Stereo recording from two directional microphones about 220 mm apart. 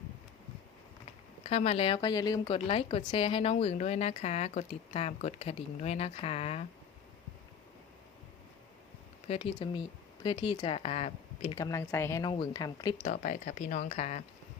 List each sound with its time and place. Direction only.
1.5 s a woman's voice: 30° left (ahead or behind)
9.2 s a woman's voice: 25° left (ahead or behind)
11.5 s speech: 15° left (ahead or behind)
13.1 s speech: 35° left (ahead or behind)